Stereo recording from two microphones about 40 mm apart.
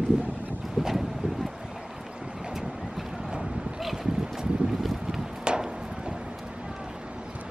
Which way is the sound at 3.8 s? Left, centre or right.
Centre.